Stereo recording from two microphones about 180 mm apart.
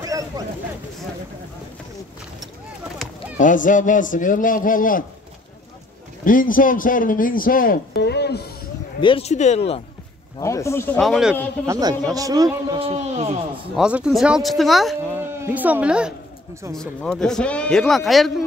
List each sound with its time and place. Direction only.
3.3 s a man's voice: 45° left (ahead or behind)
6.2 s a man's voice: 50° left (ahead or behind); by 8.5 s 65° left (ahead or behind)
9.0 s speech: 30° left (ahead or behind)
10.4 s speech: 15° left (ahead or behind)
11.0 s a man's voice: centre (ahead or behind)
11.6 s speech: 20° right (ahead or behind)
12.7 s speech: 35° right (ahead or behind)
13.7 s a man's voice: 5° right (ahead or behind)
15.3 s speech: 10° right (ahead or behind)
16.7 s a man's voice: 5° left (ahead or behind)